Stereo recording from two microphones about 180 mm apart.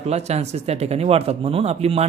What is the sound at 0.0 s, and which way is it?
Speech, 35° right (ahead or behind).